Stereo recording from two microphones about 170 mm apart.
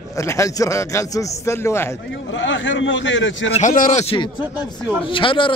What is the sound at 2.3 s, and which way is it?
A man's voice, 90° left.